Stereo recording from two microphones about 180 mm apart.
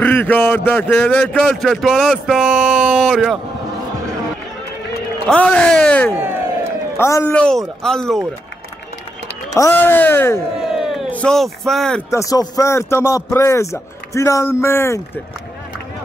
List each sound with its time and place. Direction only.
0.0 s a man's voice: 10° left (ahead or behind)
5.3 s a man's voice: 5° left (ahead or behind)
9.5 s speech: 15° left (ahead or behind)
10.6 s speech: centre (ahead or behind)
12.1 s speech: 20° left (ahead or behind)